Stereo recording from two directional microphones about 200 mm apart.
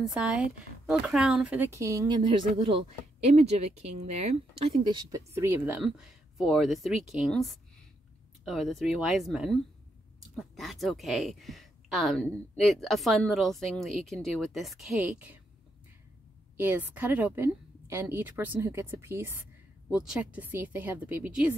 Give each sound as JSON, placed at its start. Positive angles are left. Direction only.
{"t": 0.0, "sound": "speech", "side_deg": -5}
{"t": 5.3, "sound": "speech", "side_deg": -10}
{"t": 16.5, "sound": "speech", "side_deg": -10}